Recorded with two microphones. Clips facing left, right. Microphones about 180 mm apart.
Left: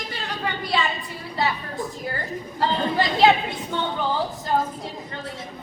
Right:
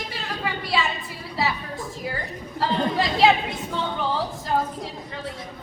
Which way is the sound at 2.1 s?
Centre (ahead or behind).